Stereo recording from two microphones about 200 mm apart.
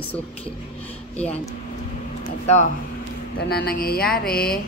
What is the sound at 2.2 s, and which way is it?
Speech, 35° left (ahead or behind).